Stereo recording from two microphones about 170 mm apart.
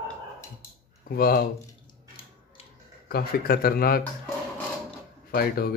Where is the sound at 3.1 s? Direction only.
65° left (ahead or behind).